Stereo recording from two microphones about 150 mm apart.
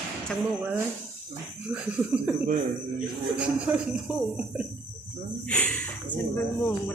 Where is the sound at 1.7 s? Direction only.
5° right (ahead or behind).